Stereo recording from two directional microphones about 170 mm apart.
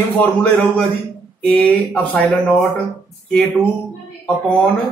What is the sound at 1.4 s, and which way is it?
A man's voice, 10° left (ahead or behind).